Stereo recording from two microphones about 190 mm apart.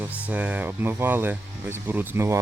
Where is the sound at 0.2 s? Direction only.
5° right (ahead or behind).